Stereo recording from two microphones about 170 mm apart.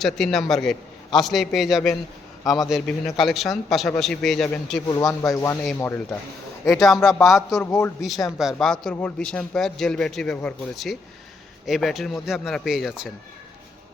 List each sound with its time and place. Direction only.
0.0 s a man's voice: centre (ahead or behind)
4.9 s speech: 20° left (ahead or behind)
6.7 s a man's voice: centre (ahead or behind)
7.5 s speech: 15° left (ahead or behind)
8.4 s a man's voice: centre (ahead or behind)